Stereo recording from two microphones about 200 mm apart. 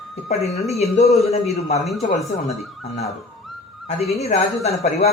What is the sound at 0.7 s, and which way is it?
Speech, 30° left (ahead or behind).